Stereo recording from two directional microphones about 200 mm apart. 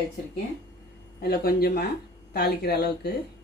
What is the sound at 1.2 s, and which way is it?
Speech, 50° left (ahead or behind).